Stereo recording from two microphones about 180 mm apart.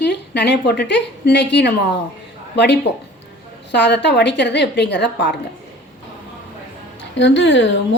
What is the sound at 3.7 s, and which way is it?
A woman's voice, 70° left (ahead or behind).